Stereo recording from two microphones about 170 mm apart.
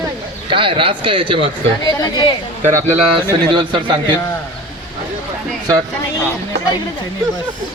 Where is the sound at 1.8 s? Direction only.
25° left (ahead or behind).